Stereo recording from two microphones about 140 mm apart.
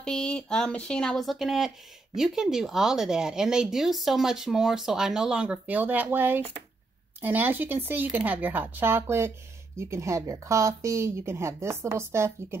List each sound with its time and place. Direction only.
0.0 s speech: 5° left (ahead or behind); by 12.5 s 20° right (ahead or behind)